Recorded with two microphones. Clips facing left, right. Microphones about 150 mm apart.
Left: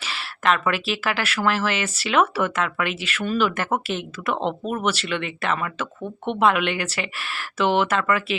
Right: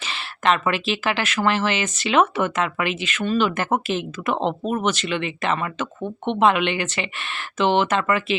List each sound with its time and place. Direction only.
0.0 s speech: centre (ahead or behind)
4.3 s speech: 35° right (ahead or behind)
4.9 s speech: centre (ahead or behind)